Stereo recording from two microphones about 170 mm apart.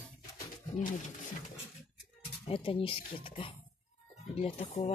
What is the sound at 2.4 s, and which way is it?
Speech, 35° left (ahead or behind).